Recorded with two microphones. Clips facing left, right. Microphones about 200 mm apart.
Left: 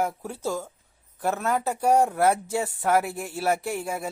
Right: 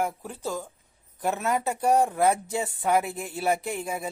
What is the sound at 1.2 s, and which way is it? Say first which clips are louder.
Speech: left 1 dB; centre (ahead or behind).